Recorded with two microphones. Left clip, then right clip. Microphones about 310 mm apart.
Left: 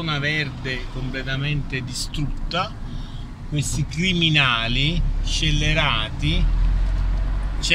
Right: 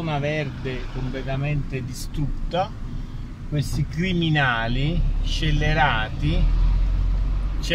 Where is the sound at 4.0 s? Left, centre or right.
Right.